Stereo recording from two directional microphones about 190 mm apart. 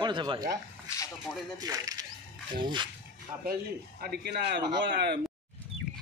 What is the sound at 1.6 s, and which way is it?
Speech, 20° right (ahead or behind).